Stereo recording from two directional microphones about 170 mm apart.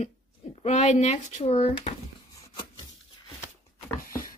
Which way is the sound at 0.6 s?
40° left (ahead or behind).